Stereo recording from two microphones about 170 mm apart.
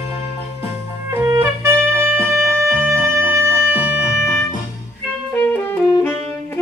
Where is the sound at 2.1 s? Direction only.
5° right (ahead or behind).